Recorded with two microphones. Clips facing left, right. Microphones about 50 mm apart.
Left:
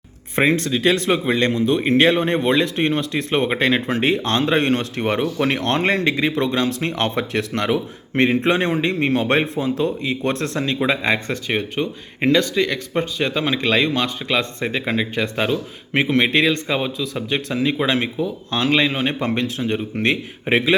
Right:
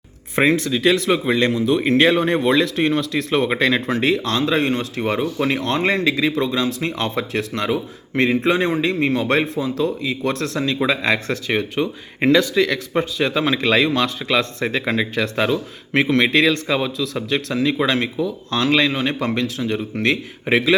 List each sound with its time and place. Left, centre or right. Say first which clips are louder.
0.4 s a man's voice: right 1 dB; centre
0.8 s speech: right 1 dB; left
1.1 s a man's voice: right 1 dB; centre
2.4 s speech: right 1 dB; left
8.1 s speech: even; left
10.8 s a man's voice: even; centre
11.3 s a man's voice: right 1 dB; centre; by 20.7 s left